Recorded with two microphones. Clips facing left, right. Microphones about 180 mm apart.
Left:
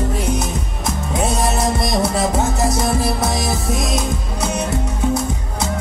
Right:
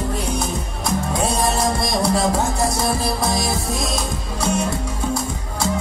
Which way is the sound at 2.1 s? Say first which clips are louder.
Left 1 dB; 20° left (ahead or behind).